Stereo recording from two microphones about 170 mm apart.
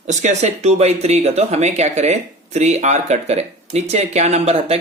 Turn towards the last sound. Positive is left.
turn(degrees=-35)  # may be behind; listen again after turning